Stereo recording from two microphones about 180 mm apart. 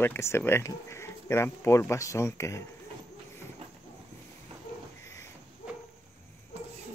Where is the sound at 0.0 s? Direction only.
15° left (ahead or behind).